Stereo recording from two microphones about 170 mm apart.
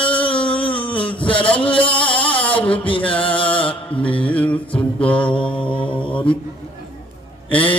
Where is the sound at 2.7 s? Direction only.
30° left (ahead or behind).